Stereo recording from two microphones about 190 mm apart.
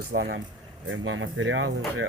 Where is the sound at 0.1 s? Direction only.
50° right (ahead or behind).